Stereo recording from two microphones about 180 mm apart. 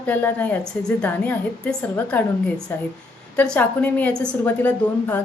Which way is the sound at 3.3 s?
5° left (ahead or behind).